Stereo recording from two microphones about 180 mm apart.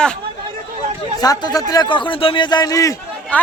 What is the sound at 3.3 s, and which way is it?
Chatter, 10° left (ahead or behind).